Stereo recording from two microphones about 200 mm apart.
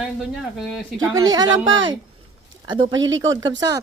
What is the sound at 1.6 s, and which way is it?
Speech, 75° right (ahead or behind).